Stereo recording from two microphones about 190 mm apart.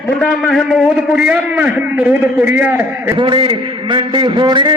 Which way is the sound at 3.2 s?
25° right (ahead or behind).